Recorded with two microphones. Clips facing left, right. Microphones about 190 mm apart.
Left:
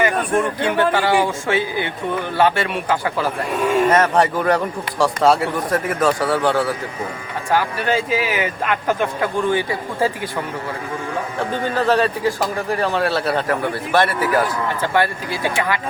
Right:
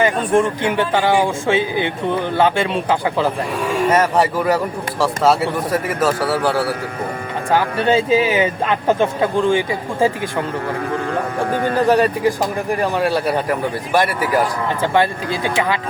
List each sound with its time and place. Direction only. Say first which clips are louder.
0.6 s a man's voice: even; 15° right (ahead or behind)
3.8 s speech: right 4 dB; 10° right (ahead or behind)
7.5 s a man's voice: right 3 dB; 25° right (ahead or behind)
11.8 s a man's voice: right 2 dB; 15° right (ahead or behind)